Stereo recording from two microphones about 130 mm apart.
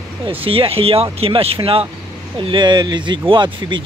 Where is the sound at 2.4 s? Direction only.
35° right (ahead or behind).